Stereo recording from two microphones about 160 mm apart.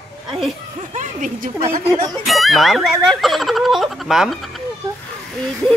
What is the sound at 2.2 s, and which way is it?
Speech, centre (ahead or behind).